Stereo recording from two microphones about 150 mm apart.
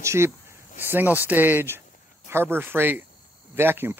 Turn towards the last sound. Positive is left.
turn(degrees=-15)  # may be behind; listen again after turning